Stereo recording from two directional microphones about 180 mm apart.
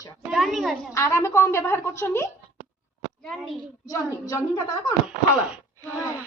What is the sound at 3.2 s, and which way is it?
Speech, centre (ahead or behind).